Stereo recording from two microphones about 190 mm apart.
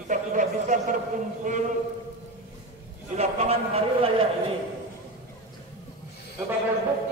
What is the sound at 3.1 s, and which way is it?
A man's voice, 35° right (ahead or behind).